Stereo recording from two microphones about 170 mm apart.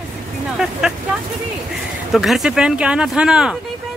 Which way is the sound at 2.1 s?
Centre (ahead or behind).